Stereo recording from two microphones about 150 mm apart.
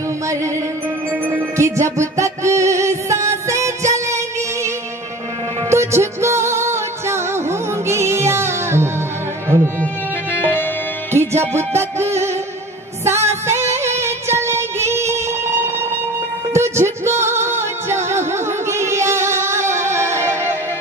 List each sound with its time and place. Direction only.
1.2 s music: 20° right (ahead or behind)
5.7 s music: 20° right (ahead or behind)
10.3 s music: 15° left (ahead or behind)
11.1 s music: 15° right (ahead or behind)